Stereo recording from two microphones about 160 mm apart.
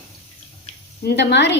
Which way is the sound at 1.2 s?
90° left.